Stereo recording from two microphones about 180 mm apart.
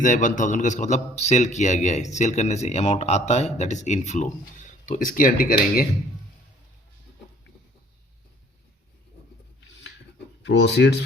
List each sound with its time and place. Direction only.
0.0 s a man's voice: 45° left (ahead or behind)
10.4 s speech: 75° left (ahead or behind)